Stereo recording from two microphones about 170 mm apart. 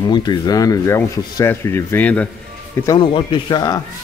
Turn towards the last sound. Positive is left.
turn(degrees=25)  # may be behind; listen again after turning